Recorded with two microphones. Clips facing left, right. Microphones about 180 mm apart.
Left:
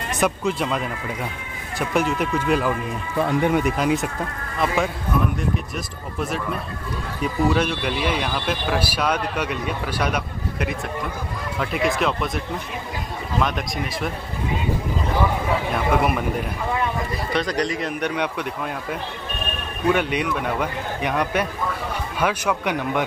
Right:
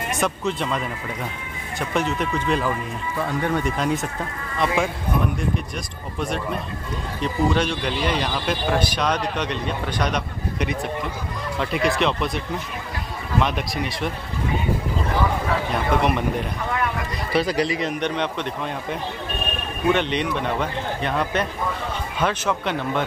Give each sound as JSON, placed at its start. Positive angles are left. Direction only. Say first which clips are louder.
{"t": 0.2, "sound": "a man's voice", "louder": "left 3 dB", "side_deg": 5}
{"t": 3.3, "sound": "speech", "louder": "left 4 dB", "side_deg": 15}
{"t": 3.7, "sound": "a man's voice", "louder": "left 2 dB", "side_deg": 0}
{"t": 6.1, "sound": "a man's voice", "louder": "even", "side_deg": 5}
{"t": 13.4, "sound": "a man's voice", "louder": "right 1 dB", "side_deg": 0}
{"t": 15.7, "sound": "a man's voice", "louder": "even", "side_deg": 5}